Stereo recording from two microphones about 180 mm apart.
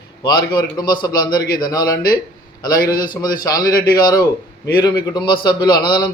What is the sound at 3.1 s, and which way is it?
A man's voice, 20° left (ahead or behind).